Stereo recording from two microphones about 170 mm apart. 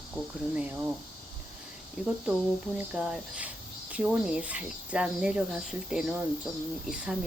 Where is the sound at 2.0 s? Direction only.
5° right (ahead or behind).